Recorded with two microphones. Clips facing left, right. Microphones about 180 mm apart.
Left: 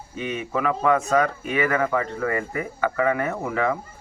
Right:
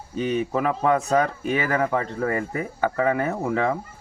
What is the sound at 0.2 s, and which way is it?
Speech, 35° right (ahead or behind).